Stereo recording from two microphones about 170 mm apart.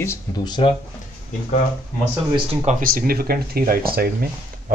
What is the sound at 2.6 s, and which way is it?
Speech, 60° right (ahead or behind).